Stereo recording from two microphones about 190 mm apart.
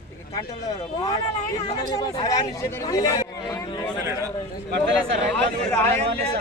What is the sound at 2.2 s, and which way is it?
A man's voice, 20° left (ahead or behind).